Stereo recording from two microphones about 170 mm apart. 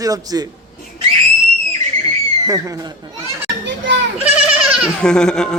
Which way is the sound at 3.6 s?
90° right.